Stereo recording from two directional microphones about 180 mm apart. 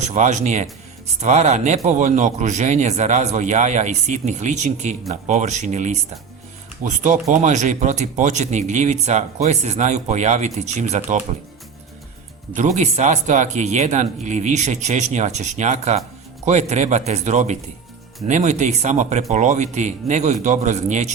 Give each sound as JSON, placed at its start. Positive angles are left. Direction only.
{"t": 0.0, "sound": "a man's voice", "side_deg": -40}
{"t": 12.5, "sound": "a man's voice", "side_deg": -40}